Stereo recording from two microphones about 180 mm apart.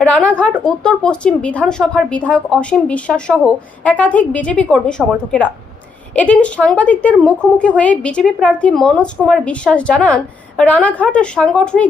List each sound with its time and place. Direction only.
0.0 s a woman's voice: 5° left (ahead or behind)